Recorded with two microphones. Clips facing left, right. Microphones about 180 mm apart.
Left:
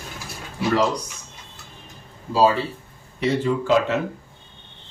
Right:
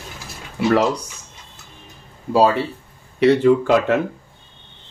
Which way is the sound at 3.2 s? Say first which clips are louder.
Right 8 dB; 65° right (ahead or behind).